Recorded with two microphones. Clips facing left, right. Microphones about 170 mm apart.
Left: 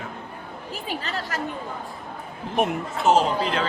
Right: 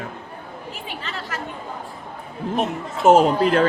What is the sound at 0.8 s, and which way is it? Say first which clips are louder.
Speech: left 4 dB; 40° left (ahead or behind).